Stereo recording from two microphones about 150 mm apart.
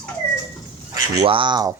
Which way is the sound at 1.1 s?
30° right (ahead or behind).